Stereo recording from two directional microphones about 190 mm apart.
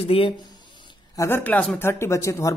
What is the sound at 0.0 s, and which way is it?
Speech, 30° left (ahead or behind).